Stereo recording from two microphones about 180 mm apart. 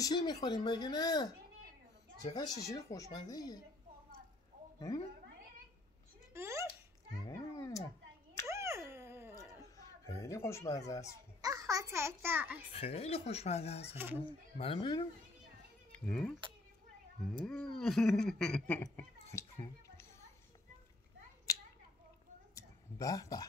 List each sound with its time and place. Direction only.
0.0 s speech: 20° left (ahead or behind)
2.3 s speech: 20° left (ahead or behind)
4.7 s speech: 20° left (ahead or behind)
6.3 s a sound: 15° right (ahead or behind)
7.2 s cat: 15° left (ahead or behind)
8.5 s a sound: 15° right (ahead or behind)
9.8 s speech: 15° left (ahead or behind)
11.4 s a child's voice: 20° right (ahead or behind)
12.7 s speech: 35° left (ahead or behind)
13.9 s speech: 10° right (ahead or behind)
14.6 s speech: 30° left (ahead or behind)
16.1 s speech: 5° left (ahead or behind)
18.8 s a sound: 20° left (ahead or behind)
22.6 s a sound: 20° left (ahead or behind)